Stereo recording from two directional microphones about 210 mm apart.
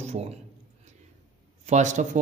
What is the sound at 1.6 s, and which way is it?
Speech, 35° right (ahead or behind).